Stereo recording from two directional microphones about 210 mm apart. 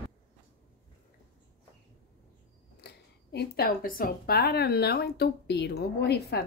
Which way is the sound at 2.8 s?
50° left (ahead or behind).